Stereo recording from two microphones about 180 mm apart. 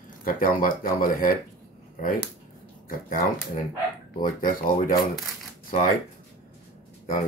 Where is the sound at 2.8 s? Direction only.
50° left (ahead or behind).